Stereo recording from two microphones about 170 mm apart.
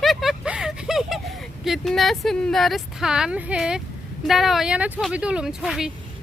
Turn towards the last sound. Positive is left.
turn(degrees=0)  # may be behind; listen again after turning